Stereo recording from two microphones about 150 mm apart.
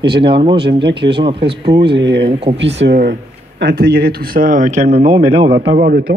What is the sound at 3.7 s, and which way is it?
Speech, 90° right.